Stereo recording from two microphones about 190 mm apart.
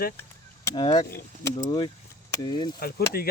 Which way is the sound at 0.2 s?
15° left (ahead or behind).